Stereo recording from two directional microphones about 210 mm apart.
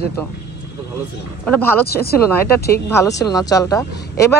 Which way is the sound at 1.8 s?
50° left (ahead or behind).